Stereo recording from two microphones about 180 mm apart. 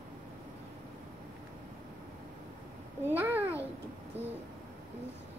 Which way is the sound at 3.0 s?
10° right (ahead or behind).